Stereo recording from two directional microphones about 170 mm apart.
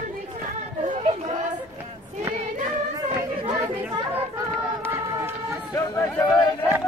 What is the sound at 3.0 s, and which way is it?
Chatter, 20° right (ahead or behind).